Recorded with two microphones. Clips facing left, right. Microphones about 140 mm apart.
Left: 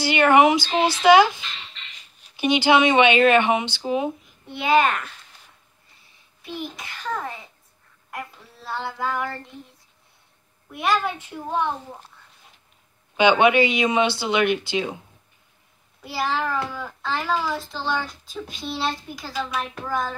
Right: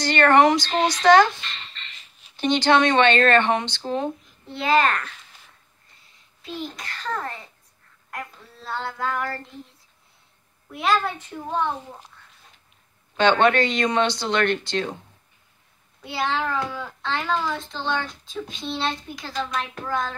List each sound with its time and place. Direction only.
0.0 s a child's voice: 5° left (ahead or behind)
6.6 s a child's voice: 5° left (ahead or behind)
8.1 s female singing: 5° left (ahead or behind)
10.7 s a child's voice: centre (ahead or behind)
13.1 s a child's voice: 10° left (ahead or behind)